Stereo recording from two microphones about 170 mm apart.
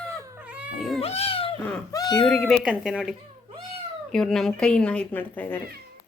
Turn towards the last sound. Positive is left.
turn(degrees=10)  # may be behind; listen again after turning